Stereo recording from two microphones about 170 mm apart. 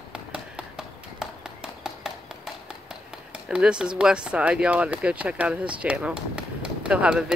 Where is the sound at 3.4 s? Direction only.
5° right (ahead or behind).